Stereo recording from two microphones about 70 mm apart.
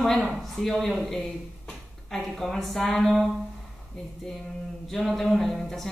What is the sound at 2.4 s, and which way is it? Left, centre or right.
Speech, centre.